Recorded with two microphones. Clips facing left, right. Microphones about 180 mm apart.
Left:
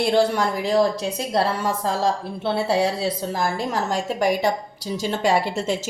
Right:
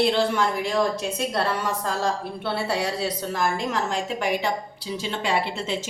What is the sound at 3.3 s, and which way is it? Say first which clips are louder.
A woman's voice: left 1 dB; 35° left (ahead or behind).